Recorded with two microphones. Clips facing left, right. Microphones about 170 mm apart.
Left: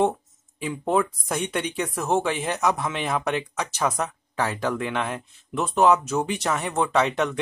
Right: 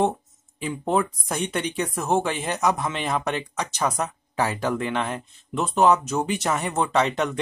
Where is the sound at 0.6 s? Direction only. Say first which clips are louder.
Even; centre (ahead or behind).